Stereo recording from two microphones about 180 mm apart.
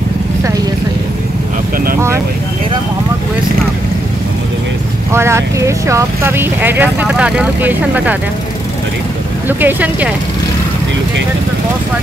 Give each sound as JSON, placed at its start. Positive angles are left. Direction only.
{"t": 2.0, "sound": "vehicle", "side_deg": -15}
{"t": 5.1, "sound": "speech", "side_deg": -15}
{"t": 9.5, "sound": "speech", "side_deg": -10}